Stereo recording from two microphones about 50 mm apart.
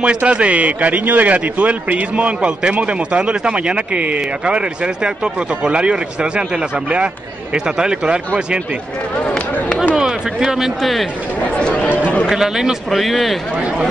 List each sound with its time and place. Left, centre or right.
0.0 s speech: right
9.2 s a sound: centre
9.9 s speech: centre
11.5 s speech: left
12.3 s a man's voice: centre